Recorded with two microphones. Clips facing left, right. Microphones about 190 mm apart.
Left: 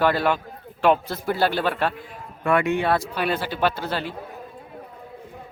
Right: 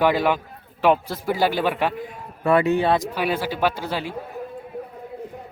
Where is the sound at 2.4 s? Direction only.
35° right (ahead or behind).